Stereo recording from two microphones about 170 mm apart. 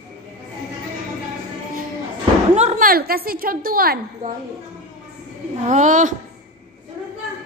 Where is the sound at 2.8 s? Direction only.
60° right (ahead or behind).